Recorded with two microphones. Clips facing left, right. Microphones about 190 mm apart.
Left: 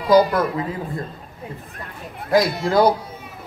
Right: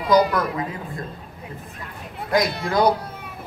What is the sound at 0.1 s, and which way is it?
Speech, 30° left (ahead or behind).